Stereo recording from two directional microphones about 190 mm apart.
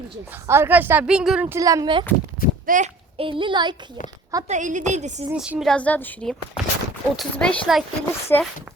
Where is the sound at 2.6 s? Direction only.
45° right (ahead or behind).